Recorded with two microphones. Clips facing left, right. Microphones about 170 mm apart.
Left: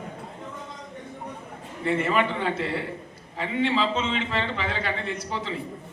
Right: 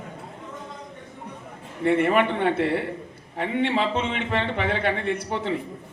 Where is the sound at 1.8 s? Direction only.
60° right (ahead or behind).